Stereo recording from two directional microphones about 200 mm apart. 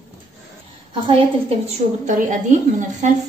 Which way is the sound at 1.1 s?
30° right (ahead or behind).